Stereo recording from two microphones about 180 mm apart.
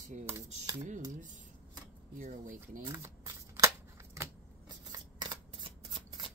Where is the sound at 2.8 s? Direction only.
15° right (ahead or behind).